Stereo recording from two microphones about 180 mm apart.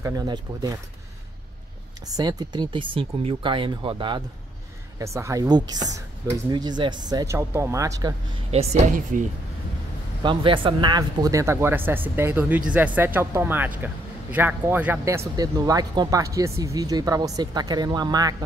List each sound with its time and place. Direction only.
0.0 s speech: 20° right (ahead or behind)
2.0 s speech: 20° right (ahead or behind)
4.9 s speech: 15° right (ahead or behind)
8.5 s speech: 35° right (ahead or behind)
10.2 s speech: 30° right (ahead or behind)